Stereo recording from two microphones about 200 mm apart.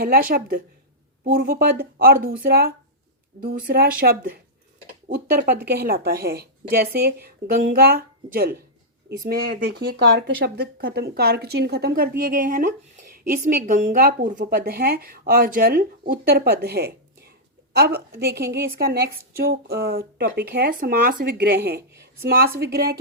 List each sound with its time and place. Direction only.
0.0 s speech: 45° right (ahead or behind)
9.7 s speech: 55° right (ahead or behind)